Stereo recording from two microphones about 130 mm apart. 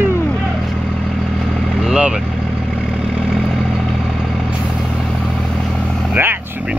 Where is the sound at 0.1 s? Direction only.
15° left (ahead or behind).